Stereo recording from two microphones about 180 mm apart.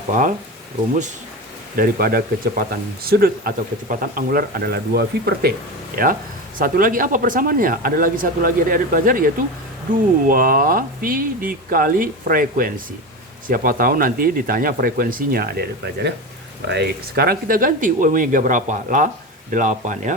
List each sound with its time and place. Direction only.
1.7 s speech: 55° right (ahead or behind)
6.6 s speech: 50° right (ahead or behind)
16.6 s speech: 70° right (ahead or behind); by 20.1 s 45° right (ahead or behind)